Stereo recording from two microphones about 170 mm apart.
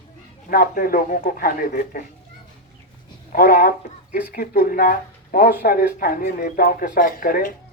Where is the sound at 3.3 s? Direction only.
60° left (ahead or behind).